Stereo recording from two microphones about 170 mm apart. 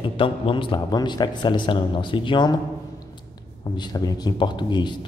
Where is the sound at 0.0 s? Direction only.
30° left (ahead or behind).